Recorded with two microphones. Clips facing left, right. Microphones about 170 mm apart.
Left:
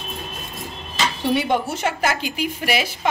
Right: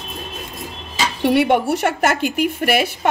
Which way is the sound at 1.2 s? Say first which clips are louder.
Right 6 dB; 70° right (ahead or behind).